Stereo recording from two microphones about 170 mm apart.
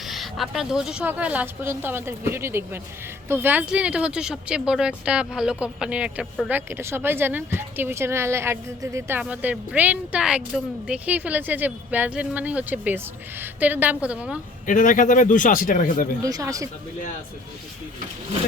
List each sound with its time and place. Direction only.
0.0 s a woman's voice: centre (ahead or behind)
14.7 s speech: 50° left (ahead or behind)
16.2 s speech: 20° right (ahead or behind)